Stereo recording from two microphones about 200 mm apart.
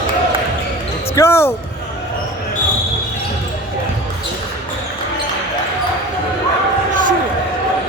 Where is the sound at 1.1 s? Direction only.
15° left (ahead or behind).